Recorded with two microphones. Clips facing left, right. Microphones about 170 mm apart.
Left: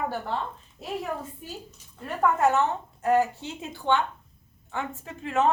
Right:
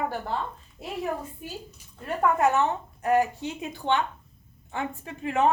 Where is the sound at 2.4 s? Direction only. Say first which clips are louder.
Even; 15° right (ahead or behind).